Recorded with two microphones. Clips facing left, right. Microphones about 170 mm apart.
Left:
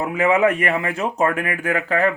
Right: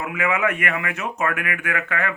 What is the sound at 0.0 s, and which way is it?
Speech, 35° left (ahead or behind).